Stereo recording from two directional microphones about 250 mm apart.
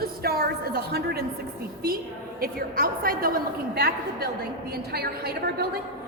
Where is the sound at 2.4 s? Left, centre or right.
Right.